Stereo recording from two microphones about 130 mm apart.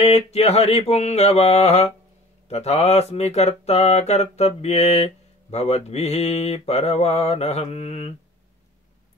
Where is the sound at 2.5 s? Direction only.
55° left (ahead or behind).